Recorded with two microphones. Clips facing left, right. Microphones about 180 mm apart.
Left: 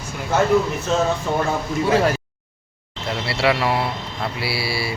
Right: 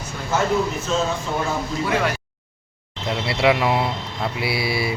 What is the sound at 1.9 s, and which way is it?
Speech, 35° left (ahead or behind).